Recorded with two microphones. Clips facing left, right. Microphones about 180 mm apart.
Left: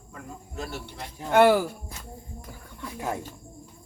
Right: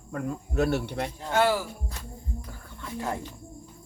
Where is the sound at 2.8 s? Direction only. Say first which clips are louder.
Even; 15° left (ahead or behind).